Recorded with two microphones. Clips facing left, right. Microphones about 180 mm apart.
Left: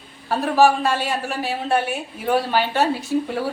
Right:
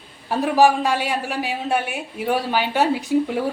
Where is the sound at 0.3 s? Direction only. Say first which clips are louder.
Even; 15° right (ahead or behind).